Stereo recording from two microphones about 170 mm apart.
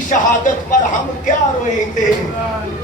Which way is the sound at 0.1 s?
50° left (ahead or behind).